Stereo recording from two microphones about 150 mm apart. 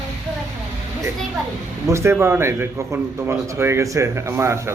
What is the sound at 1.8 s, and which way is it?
A man's voice, 15° right (ahead or behind).